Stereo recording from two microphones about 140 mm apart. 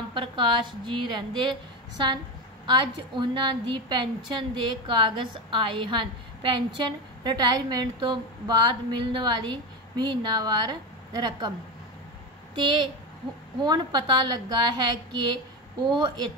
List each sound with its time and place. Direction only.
0.1 s a woman's voice: 35° right (ahead or behind)
12.5 s a woman's voice: 35° right (ahead or behind)